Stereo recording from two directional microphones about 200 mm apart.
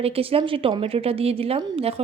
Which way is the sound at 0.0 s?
30° right (ahead or behind).